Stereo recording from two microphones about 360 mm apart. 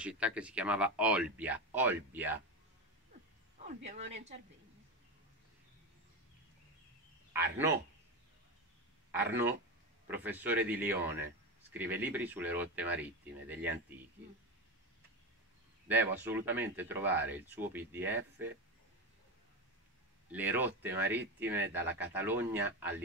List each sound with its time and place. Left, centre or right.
0.0 s speech: centre
3.9 s a woman's voice: centre
7.3 s speech: centre
9.1 s speech: centre
15.9 s speech: centre
20.2 s speech: centre